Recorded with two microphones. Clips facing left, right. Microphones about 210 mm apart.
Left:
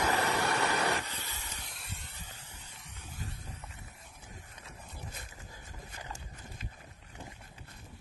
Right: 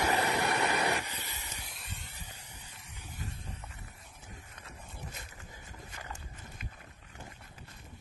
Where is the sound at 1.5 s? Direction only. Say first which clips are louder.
Even; centre (ahead or behind).